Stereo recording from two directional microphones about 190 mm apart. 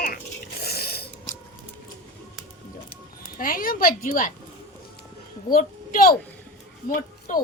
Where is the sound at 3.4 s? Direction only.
45° left (ahead or behind).